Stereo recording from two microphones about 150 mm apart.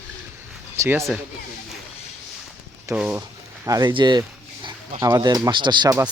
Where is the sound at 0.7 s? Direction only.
20° right (ahead or behind).